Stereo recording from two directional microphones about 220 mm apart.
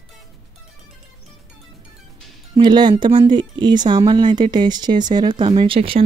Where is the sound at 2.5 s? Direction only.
20° right (ahead or behind).